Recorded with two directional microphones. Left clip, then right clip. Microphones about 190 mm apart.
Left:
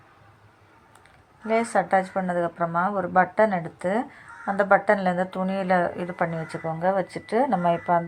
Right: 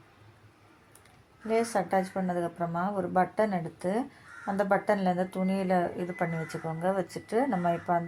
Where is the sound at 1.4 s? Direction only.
10° left (ahead or behind).